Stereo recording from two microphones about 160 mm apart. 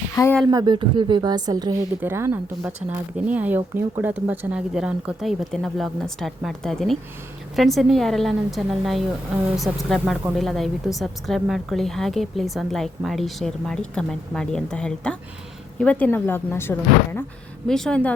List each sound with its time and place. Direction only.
0.2 s speech: 20° left (ahead or behind)
0.5 s speech: 30° right (ahead or behind)
2.0 s speech: 15° right (ahead or behind); by 17.2 s 15° left (ahead or behind)
17.7 s speech: 5° left (ahead or behind)